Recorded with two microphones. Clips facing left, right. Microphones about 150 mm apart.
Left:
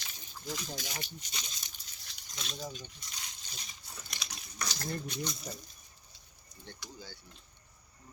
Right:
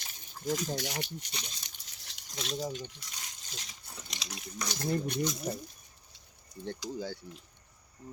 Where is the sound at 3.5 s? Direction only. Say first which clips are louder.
Right 3 dB; 85° right.